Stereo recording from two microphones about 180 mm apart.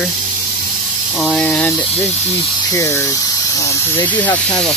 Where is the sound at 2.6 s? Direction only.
15° left (ahead or behind).